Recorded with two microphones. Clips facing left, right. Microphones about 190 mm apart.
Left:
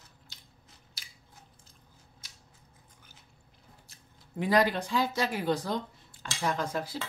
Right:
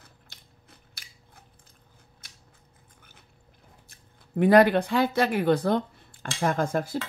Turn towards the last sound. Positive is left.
turn(degrees=-50)  # may be behind; listen again after turning